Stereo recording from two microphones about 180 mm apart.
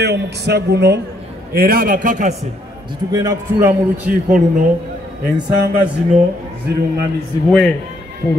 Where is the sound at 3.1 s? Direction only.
20° right (ahead or behind).